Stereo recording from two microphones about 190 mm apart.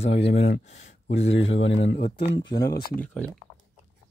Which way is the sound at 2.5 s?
20° left (ahead or behind).